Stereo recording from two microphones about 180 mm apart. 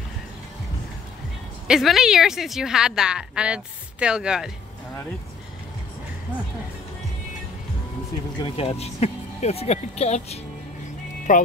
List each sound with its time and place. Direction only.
1.7 s a woman's voice: centre (ahead or behind)
8.4 s speech: 30° left (ahead or behind)